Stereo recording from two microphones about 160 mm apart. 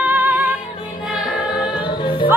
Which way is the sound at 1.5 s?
30° left (ahead or behind).